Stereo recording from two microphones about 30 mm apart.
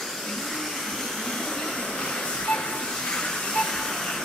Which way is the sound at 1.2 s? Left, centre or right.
Centre.